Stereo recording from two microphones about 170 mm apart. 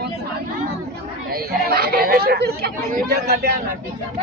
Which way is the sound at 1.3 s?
65° right (ahead or behind).